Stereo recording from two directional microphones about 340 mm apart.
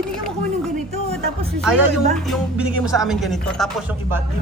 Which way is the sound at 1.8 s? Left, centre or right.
Right.